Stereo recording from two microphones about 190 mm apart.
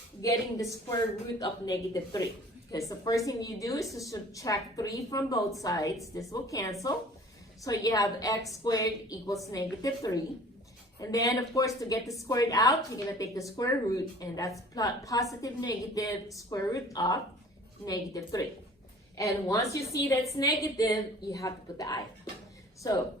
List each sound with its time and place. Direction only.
0.2 s a woman's voice: 15° left (ahead or behind)